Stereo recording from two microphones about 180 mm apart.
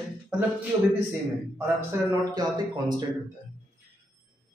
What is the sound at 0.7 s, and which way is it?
Speech, 15° right (ahead or behind).